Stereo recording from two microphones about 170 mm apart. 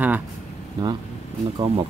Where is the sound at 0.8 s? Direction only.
25° right (ahead or behind).